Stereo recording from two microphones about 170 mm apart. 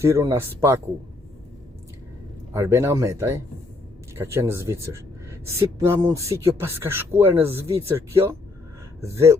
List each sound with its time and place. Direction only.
0.0 s speech: 15° right (ahead or behind)
2.5 s speech: 15° right (ahead or behind)